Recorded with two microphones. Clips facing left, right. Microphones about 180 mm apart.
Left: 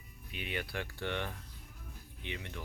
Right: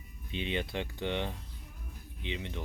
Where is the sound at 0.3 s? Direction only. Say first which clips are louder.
Right 6 dB; 25° right (ahead or behind).